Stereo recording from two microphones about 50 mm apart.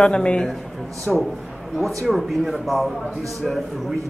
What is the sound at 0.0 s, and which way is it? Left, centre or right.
Speech, left.